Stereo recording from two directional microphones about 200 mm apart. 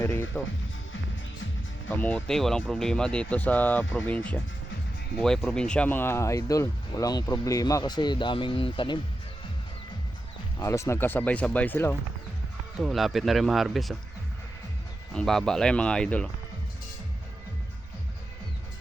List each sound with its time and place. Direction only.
0.0 s music: 10° left (ahead or behind)
2.0 s speech: 5° left (ahead or behind); by 9.0 s 25° left (ahead or behind)
10.6 s speech: 15° left (ahead or behind)
12.8 s speech: centre (ahead or behind)
15.1 s speech: 5° left (ahead or behind)